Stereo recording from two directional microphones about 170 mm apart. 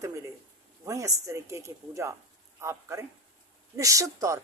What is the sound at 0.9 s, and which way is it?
A woman's voice, 20° right (ahead or behind).